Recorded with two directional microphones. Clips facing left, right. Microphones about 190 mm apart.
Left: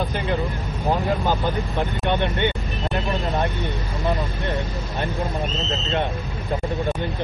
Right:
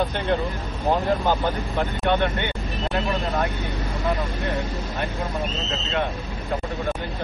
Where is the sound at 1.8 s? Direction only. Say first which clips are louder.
Right 2 dB; 15° left (ahead or behind).